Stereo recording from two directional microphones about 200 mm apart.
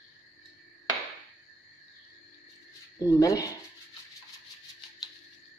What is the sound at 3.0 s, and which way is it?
Speech, 20° left (ahead or behind).